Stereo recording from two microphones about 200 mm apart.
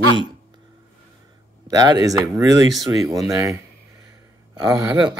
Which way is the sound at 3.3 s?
15° right (ahead or behind).